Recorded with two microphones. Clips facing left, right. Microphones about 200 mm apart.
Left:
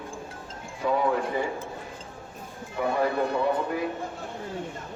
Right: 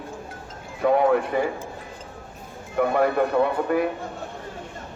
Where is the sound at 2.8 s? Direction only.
65° right (ahead or behind).